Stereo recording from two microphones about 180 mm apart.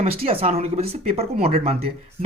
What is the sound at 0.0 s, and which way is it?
Speech, 35° right (ahead or behind).